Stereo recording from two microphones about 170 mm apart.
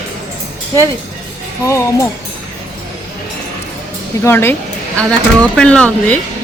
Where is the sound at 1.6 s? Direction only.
15° left (ahead or behind).